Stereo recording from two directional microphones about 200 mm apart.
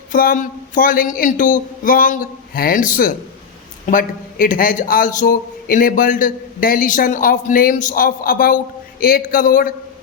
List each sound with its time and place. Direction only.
0.1 s a man's voice: 45° left (ahead or behind)